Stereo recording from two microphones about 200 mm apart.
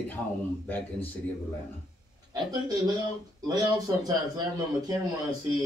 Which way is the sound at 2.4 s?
20° right (ahead or behind).